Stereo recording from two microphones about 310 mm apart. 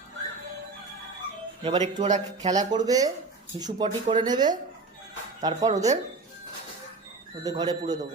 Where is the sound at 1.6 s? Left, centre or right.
Centre.